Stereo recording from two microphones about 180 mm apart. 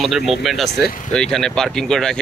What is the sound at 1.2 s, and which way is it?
Speech, 5° left (ahead or behind).